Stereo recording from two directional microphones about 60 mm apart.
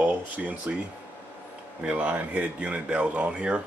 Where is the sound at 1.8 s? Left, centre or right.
Right.